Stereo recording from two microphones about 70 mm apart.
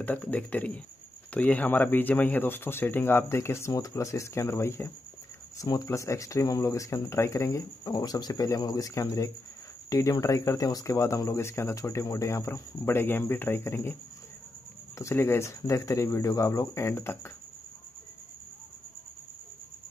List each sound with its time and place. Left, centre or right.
0.0 s speech: left
5.6 s speech: left
5.9 s speech: left
7.8 s speech: left
15.0 s speech: left